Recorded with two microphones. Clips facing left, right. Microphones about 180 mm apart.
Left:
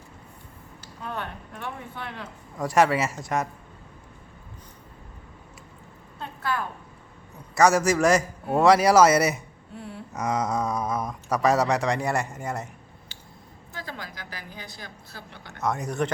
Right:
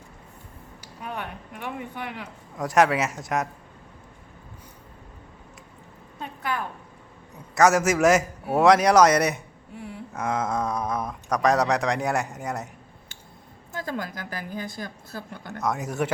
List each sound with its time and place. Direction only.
0.8 s speech: 15° right (ahead or behind)
2.6 s a man's voice: centre (ahead or behind)
6.1 s a sound: 15° right (ahead or behind)
7.5 s a man's voice: centre (ahead or behind)
9.7 s a sound: 15° right (ahead or behind)
10.2 s a sound: centre (ahead or behind)
11.4 s a man's voice: centre (ahead or behind)
13.7 s a woman's voice: 45° right (ahead or behind)
15.6 s a man's voice: centre (ahead or behind)